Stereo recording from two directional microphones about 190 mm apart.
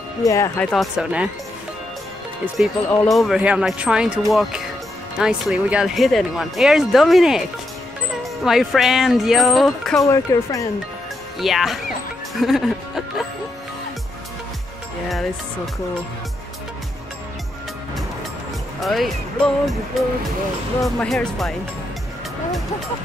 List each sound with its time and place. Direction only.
0.2 s speech: 15° left (ahead or behind)
0.9 s speech: 5° right (ahead or behind)
2.4 s speech: centre (ahead or behind)
10.0 s speech: 15° left (ahead or behind)
11.3 s speech: centre (ahead or behind)
15.0 s speech: centre (ahead or behind)
18.8 s speech: centre (ahead or behind)
20.8 s speech: 5° left (ahead or behind)